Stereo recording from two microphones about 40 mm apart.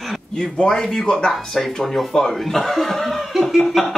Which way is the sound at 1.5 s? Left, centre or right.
Centre.